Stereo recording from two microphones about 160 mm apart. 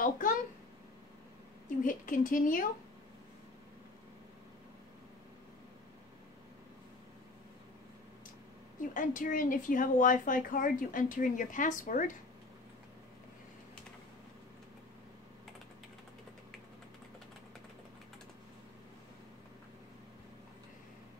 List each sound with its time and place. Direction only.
0.0 s a sound: 55° left (ahead or behind)
1.9 s speech: 55° left (ahead or behind)
8.9 s speech: 55° left (ahead or behind)